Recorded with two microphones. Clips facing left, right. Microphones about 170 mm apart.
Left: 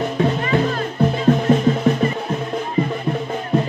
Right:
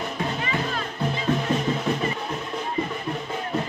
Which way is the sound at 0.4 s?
45° left (ahead or behind).